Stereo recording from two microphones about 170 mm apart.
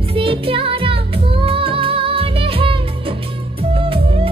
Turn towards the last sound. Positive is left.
turn(degrees=-35)  # may be behind; listen again after turning